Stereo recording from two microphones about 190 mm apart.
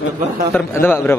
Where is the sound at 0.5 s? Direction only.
10° left (ahead or behind).